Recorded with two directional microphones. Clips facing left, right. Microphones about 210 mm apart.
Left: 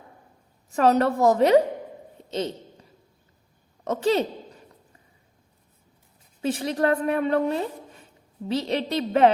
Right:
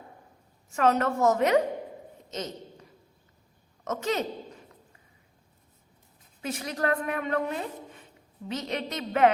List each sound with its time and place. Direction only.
0.7 s a woman's voice: 35° left (ahead or behind)
3.8 s a woman's voice: 30° left (ahead or behind)
6.4 s a woman's voice: 30° left (ahead or behind)